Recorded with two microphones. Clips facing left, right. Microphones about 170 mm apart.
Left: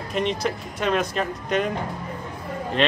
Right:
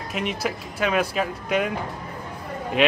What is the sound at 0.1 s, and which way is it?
Speech, 5° right (ahead or behind).